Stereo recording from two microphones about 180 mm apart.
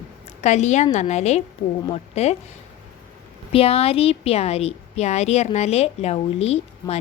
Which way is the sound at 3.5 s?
35° left (ahead or behind).